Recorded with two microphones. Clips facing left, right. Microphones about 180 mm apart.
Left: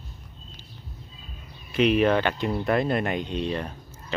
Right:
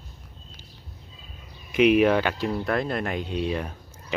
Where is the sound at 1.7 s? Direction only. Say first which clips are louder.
Right 2 dB; 10° right (ahead or behind).